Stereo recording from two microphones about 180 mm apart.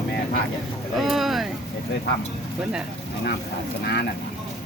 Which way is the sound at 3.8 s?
65° left (ahead or behind).